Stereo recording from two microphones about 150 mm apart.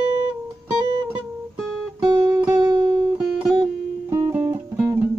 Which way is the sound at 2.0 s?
20° right (ahead or behind).